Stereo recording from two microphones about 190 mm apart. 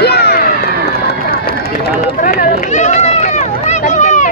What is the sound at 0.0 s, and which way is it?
Run, 60° left (ahead or behind).